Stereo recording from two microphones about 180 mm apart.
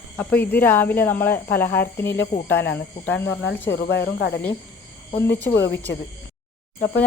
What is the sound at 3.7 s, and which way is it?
Speech, 75° left (ahead or behind).